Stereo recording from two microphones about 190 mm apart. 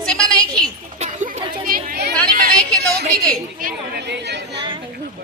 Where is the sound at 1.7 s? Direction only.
50° right (ahead or behind).